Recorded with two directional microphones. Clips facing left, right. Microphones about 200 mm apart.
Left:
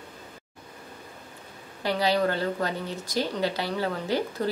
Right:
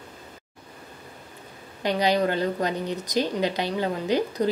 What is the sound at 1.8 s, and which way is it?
A woman's voice, 20° right (ahead or behind).